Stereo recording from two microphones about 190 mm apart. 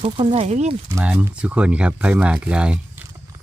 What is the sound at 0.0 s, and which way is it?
Speech, 30° right (ahead or behind).